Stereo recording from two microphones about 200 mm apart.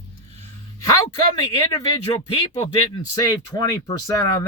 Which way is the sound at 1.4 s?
20° left (ahead or behind).